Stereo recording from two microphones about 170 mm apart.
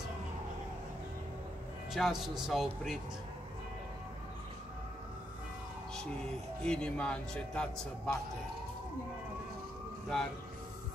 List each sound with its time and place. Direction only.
2.0 s a man's voice: centre (ahead or behind)
6.6 s a man's voice: 5° left (ahead or behind)